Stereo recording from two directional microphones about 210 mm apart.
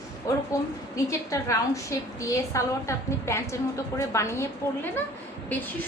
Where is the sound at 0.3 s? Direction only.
15° left (ahead or behind).